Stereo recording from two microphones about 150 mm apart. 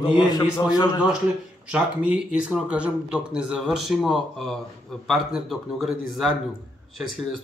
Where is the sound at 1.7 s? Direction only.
5° right (ahead or behind).